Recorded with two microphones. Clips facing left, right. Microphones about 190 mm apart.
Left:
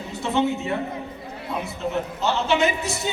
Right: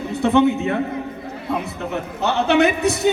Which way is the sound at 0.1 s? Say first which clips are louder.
Right 7 dB; 60° right (ahead or behind).